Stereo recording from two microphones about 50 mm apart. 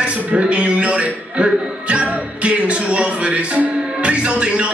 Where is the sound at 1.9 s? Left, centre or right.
Right.